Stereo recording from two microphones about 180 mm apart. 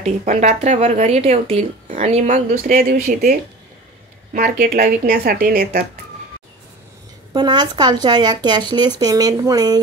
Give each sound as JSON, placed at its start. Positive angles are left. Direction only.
{"t": 0.2, "sound": "speech", "side_deg": -40}
{"t": 7.3, "sound": "speech", "side_deg": -25}